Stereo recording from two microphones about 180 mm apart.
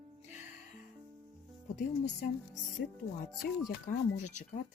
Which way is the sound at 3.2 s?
55° left (ahead or behind).